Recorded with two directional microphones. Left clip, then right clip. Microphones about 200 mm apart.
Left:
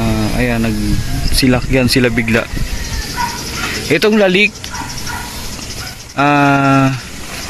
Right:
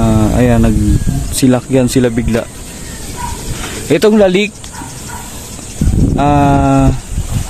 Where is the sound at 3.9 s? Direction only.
25° right (ahead or behind).